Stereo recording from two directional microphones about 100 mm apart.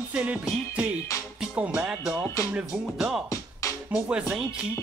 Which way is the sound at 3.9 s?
10° right (ahead or behind).